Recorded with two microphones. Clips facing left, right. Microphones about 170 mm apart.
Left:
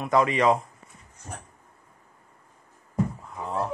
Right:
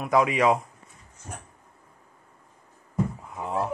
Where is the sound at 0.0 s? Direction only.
5° right (ahead or behind).